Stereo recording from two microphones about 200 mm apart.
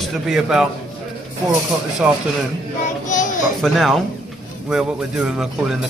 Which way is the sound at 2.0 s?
5° right (ahead or behind).